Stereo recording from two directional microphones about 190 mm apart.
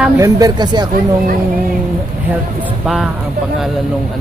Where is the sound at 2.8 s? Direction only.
Centre (ahead or behind).